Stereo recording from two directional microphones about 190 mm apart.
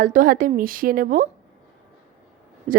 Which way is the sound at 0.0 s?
45° right (ahead or behind).